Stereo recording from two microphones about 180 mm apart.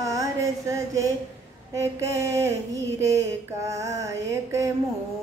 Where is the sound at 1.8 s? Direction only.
15° right (ahead or behind).